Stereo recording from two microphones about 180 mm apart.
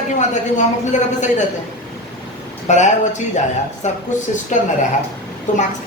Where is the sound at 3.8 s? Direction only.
40° left (ahead or behind).